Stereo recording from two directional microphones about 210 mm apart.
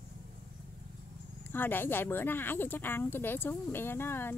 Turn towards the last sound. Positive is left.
turn(degrees=10)  # may be behind; listen again after turning